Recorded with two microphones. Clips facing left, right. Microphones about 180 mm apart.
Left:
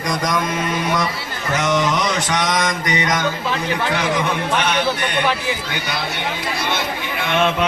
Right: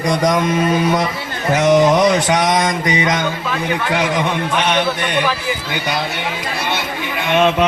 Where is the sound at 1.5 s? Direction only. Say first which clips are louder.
Right 7 dB; 30° right (ahead or behind).